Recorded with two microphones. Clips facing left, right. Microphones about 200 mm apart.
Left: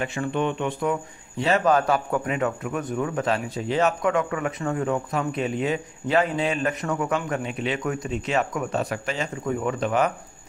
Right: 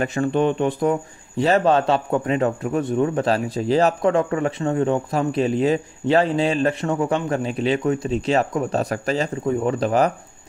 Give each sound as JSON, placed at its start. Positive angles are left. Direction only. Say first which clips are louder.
{"t": 0.0, "sound": "speech", "louder": "right 6 dB", "side_deg": -40}